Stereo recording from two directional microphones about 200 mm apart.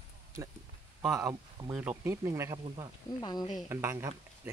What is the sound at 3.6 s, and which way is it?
Speech, 15° right (ahead or behind).